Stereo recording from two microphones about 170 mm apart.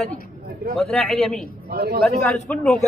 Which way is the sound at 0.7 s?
Centre (ahead or behind).